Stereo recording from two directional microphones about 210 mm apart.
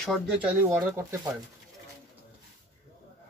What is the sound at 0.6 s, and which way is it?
Speech, 10° right (ahead or behind).